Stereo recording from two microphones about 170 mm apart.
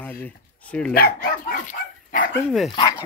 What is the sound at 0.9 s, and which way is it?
Speech, 60° left (ahead or behind).